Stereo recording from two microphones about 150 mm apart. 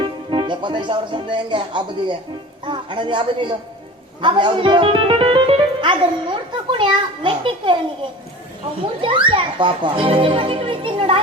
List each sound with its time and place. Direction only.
0.0 s speech: 30° right (ahead or behind)
9.0 s speech: 35° right (ahead or behind)